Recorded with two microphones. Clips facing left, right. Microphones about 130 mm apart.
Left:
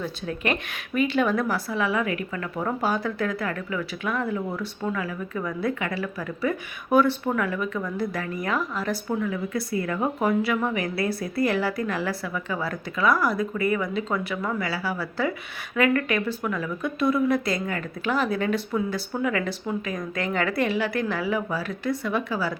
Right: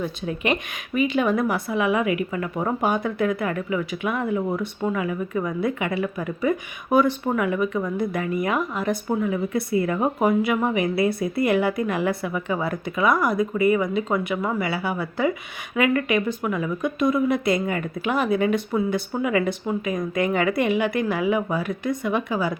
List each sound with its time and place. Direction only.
0.0 s a woman's voice: 15° right (ahead or behind)